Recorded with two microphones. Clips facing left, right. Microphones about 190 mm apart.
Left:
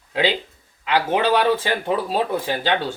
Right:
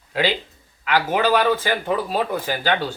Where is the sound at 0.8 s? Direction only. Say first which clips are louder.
Even; 25° left (ahead or behind).